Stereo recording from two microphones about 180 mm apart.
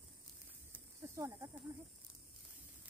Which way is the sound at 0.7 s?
15° right (ahead or behind).